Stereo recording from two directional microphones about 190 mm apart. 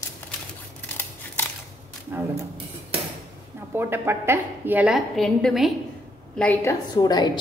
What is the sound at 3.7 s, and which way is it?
A woman's voice, 10° right (ahead or behind).